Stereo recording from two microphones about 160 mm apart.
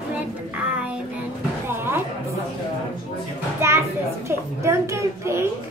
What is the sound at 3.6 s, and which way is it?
A child's voice, 15° right (ahead or behind).